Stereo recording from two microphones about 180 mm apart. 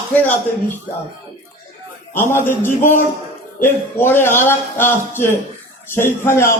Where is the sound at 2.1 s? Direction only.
15° left (ahead or behind).